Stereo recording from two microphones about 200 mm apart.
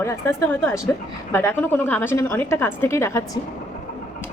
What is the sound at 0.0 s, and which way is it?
A woman's voice, 15° left (ahead or behind).